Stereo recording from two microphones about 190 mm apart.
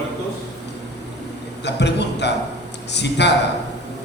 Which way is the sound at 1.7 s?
65° left (ahead or behind).